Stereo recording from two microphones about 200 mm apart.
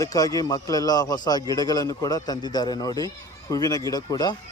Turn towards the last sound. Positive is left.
turn(degrees=20)  # may be behind; listen again after turning